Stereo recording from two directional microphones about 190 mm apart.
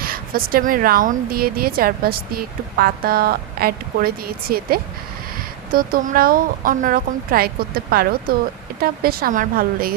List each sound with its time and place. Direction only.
0.0 s speech: 50° right (ahead or behind)